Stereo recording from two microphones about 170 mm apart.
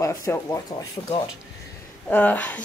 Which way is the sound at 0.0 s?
20° left (ahead or behind).